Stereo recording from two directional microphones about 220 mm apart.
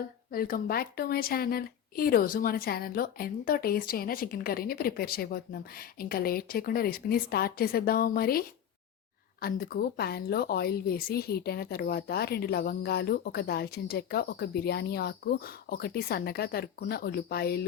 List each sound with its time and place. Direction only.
0.3 s a woman's voice: 40° left (ahead or behind)